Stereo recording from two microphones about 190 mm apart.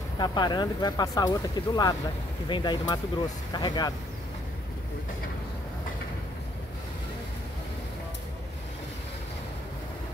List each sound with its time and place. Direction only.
0.2 s speech: 25° left (ahead or behind)